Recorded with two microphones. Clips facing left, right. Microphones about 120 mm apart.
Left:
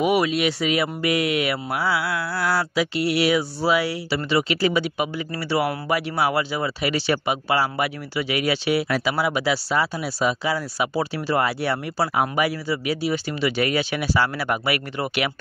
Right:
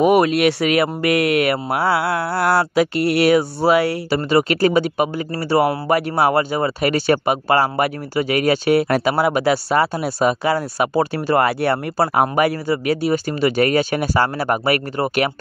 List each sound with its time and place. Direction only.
0.0 s speech: 50° right (ahead or behind)